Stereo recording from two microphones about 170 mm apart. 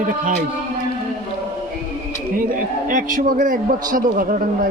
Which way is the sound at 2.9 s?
50° right (ahead or behind).